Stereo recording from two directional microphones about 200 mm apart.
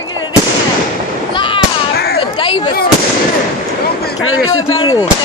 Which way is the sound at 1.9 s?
50° left (ahead or behind).